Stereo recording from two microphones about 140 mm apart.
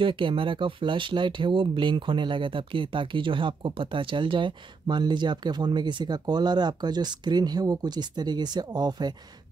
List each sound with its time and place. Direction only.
0.0 s speech: 40° right (ahead or behind)